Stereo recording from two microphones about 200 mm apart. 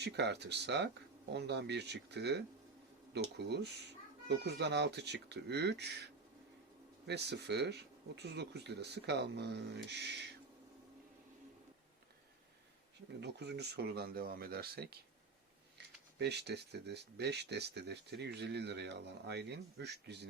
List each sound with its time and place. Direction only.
0.0 s speech: 55° right (ahead or behind)
7.1 s speech: 55° right (ahead or behind)
13.1 s speech: 55° right (ahead or behind)
16.1 s speech: 55° right (ahead or behind)